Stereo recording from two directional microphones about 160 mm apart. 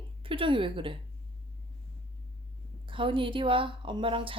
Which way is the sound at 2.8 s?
30° right (ahead or behind).